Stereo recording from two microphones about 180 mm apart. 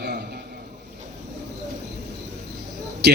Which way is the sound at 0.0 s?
70° right (ahead or behind).